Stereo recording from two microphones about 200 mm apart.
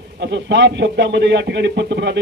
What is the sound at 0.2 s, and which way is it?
A man's voice, 60° right (ahead or behind).